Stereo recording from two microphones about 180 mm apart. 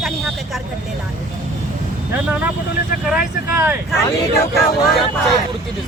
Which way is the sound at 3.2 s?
10° right (ahead or behind).